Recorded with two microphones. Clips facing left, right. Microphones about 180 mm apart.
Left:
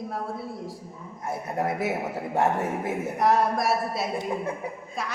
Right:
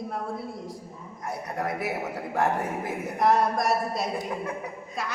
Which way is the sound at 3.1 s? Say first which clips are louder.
Even; centre (ahead or behind).